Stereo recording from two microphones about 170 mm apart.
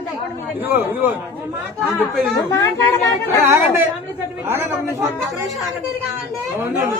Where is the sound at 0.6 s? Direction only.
10° right (ahead or behind).